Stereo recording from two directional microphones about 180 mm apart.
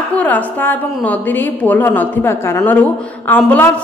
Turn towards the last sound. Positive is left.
turn(degrees=10)  # may be behind; listen again after turning